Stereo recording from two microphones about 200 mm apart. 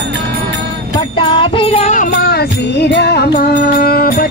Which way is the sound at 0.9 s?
25° left (ahead or behind).